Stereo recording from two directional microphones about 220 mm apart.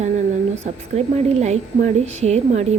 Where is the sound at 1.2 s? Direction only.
30° right (ahead or behind).